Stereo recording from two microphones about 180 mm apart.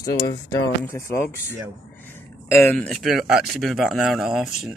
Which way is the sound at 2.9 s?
5° right (ahead or behind).